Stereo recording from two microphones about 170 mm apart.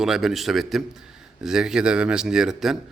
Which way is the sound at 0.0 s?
Centre (ahead or behind).